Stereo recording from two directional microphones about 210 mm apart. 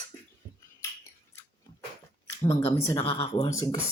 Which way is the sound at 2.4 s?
30° left (ahead or behind).